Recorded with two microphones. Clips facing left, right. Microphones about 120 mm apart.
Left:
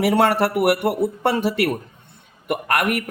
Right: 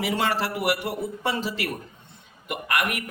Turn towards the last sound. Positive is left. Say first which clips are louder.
# left 6 dB
turn(degrees=55)  # may be behind; listen again after turning